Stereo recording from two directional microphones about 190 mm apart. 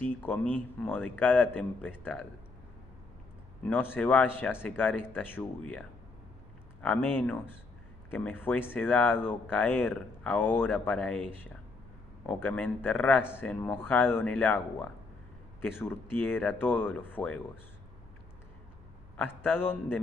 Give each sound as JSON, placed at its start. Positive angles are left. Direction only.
{"t": 0.0, "sound": "speech", "side_deg": 10}
{"t": 3.6, "sound": "speech", "side_deg": 10}
{"t": 12.3, "sound": "speech", "side_deg": 10}
{"t": 15.6, "sound": "speech", "side_deg": 10}
{"t": 19.1, "sound": "speech", "side_deg": 10}